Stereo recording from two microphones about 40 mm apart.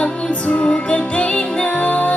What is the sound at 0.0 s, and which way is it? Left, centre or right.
Music, left.